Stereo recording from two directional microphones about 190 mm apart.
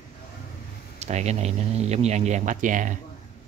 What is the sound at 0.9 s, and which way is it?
Speech, 35° right (ahead or behind).